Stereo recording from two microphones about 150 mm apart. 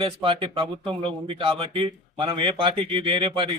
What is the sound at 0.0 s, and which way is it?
Speech, 35° right (ahead or behind).